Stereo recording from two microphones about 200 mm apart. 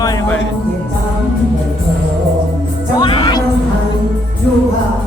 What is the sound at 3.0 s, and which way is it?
Music, 25° left (ahead or behind).